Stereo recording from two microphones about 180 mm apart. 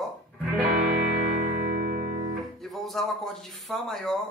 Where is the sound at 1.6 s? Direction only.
50° right (ahead or behind).